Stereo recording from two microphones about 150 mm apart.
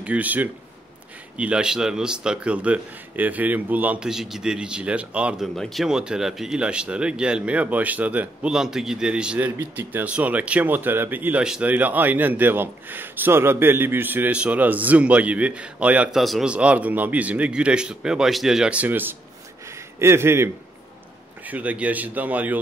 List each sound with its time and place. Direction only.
0.0 s speech: 10° right (ahead or behind)